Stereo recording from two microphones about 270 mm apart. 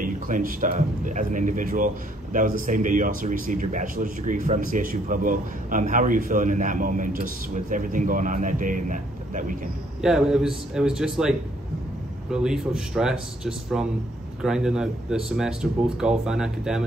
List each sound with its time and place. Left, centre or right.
0.0 s a man's voice: right
10.0 s speech: centre